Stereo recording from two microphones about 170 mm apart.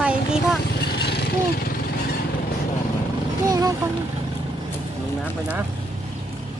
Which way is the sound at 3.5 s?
20° right (ahead or behind).